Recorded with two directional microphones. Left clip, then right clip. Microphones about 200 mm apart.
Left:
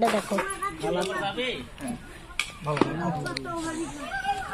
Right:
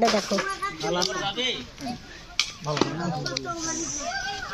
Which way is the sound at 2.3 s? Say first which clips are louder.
Right 1 dB; centre (ahead or behind).